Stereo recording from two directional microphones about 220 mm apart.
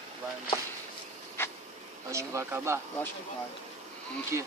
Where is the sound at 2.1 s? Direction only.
15° right (ahead or behind).